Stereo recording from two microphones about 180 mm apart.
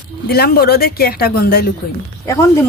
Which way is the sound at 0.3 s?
60° left (ahead or behind).